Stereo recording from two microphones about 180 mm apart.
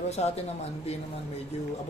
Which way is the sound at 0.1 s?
35° left (ahead or behind).